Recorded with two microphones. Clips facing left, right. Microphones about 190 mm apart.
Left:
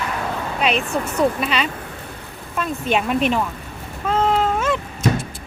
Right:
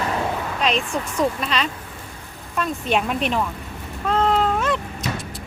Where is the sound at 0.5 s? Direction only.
5° left (ahead or behind).